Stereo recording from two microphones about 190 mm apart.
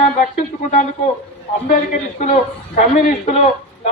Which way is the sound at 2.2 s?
40° left (ahead or behind).